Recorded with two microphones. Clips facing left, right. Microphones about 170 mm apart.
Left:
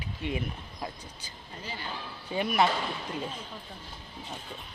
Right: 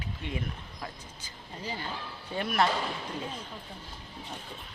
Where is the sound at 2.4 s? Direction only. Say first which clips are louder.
Left 2 dB; 5° left (ahead or behind).